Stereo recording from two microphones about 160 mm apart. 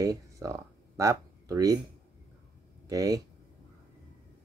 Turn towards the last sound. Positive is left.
turn(degrees=-20)  # may be behind; listen again after turning